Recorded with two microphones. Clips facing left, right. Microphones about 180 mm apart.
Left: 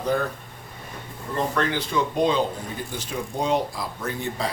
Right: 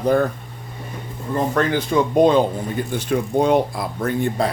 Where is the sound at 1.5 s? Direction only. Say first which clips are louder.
Right 7 dB; 50° right (ahead or behind).